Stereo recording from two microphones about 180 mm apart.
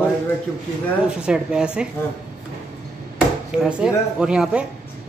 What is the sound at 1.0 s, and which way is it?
Speech, 5° right (ahead or behind).